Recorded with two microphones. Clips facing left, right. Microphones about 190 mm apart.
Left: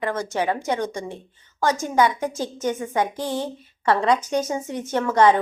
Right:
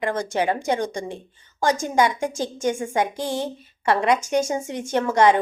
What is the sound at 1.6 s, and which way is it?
A woman's voice, 15° right (ahead or behind).